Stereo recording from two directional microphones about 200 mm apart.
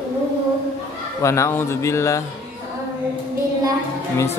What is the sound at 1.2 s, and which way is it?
Speech, 15° left (ahead or behind).